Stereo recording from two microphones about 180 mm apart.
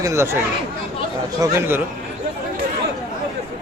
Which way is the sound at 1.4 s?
15° right (ahead or behind).